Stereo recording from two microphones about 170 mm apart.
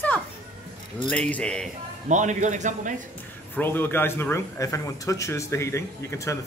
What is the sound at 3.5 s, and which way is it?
Speech, 10° left (ahead or behind).